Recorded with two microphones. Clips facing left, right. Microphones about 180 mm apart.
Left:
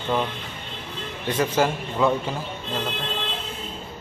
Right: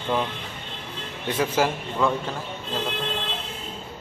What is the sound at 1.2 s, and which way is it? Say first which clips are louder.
Speech: left 1 dB; 5° right (ahead or behind).